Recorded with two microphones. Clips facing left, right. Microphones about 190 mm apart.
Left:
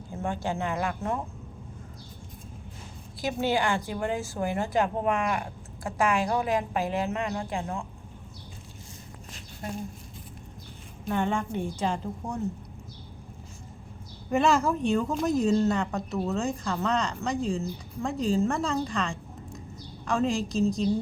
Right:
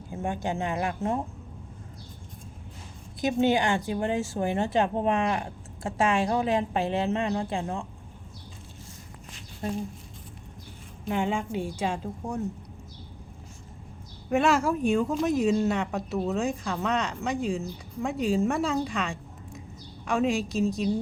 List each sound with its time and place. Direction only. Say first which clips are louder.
0.1 s a woman's voice: right 1 dB; 20° right (ahead or behind)
3.2 s a woman's voice: right 3 dB; 20° right (ahead or behind)
11.1 s speech: even; 10° right (ahead or behind)
14.3 s a woman's voice: even; 5° right (ahead or behind)